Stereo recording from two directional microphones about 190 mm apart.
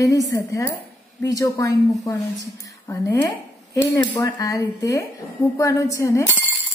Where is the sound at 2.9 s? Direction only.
15° left (ahead or behind).